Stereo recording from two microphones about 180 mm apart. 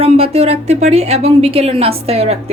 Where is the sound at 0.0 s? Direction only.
35° right (ahead or behind).